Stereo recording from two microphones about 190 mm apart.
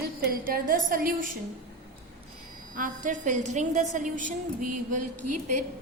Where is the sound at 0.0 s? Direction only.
50° right (ahead or behind).